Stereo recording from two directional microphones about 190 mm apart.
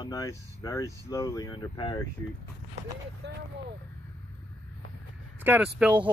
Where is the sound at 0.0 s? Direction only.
20° left (ahead or behind).